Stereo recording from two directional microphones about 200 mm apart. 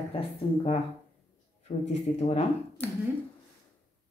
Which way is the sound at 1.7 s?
40° left (ahead or behind).